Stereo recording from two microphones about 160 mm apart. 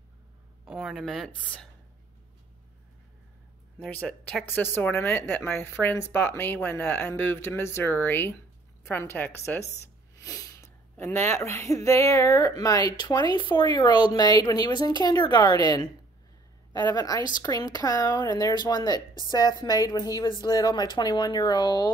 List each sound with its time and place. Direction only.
0.7 s speech: centre (ahead or behind)
3.8 s speech: 10° left (ahead or behind); by 21.9 s 25° left (ahead or behind)